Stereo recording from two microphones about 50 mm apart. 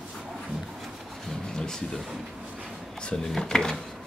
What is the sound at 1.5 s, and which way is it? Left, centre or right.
Speech, centre.